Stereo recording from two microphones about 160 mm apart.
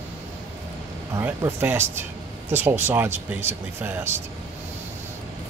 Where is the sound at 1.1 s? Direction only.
20° right (ahead or behind).